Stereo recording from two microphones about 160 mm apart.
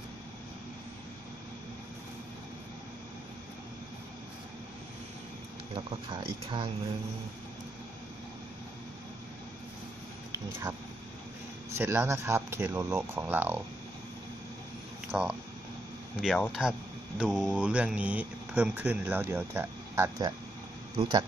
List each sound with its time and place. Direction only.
5.8 s speech: 35° right (ahead or behind)
11.7 s speech: 15° right (ahead or behind)
15.0 s speech: 5° right (ahead or behind)
20.9 s speech: 35° right (ahead or behind)